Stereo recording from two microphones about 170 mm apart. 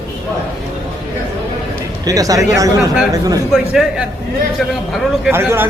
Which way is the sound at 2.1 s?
20° right (ahead or behind).